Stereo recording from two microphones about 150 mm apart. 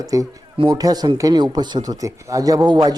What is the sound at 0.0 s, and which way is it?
Speech, 25° right (ahead or behind).